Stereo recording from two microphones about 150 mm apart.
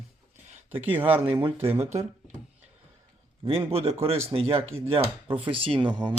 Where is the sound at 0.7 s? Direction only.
10° right (ahead or behind).